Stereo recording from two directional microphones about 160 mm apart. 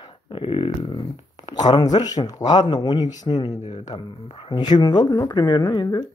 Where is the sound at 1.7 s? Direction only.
25° left (ahead or behind).